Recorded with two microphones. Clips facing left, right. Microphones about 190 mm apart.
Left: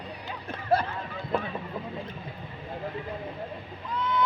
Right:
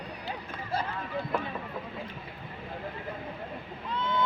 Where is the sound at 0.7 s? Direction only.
65° left (ahead or behind).